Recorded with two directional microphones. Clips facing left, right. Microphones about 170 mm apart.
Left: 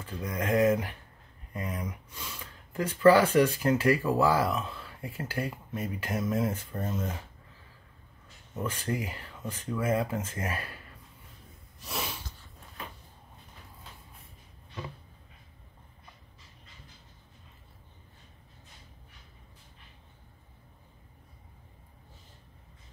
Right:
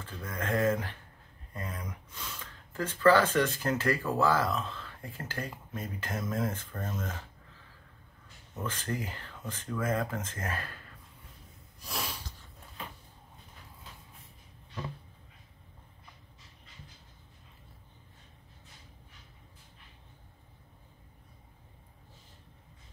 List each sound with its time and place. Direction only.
0.0 s speech: 15° left (ahead or behind)
1.5 s a sound: 15° left (ahead or behind)
1.9 s speech: 5° left (ahead or behind)
8.6 s speech: 10° left (ahead or behind)
11.8 s snort: centre (ahead or behind)